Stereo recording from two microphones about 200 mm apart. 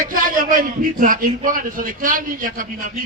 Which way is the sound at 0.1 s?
45° right (ahead or behind).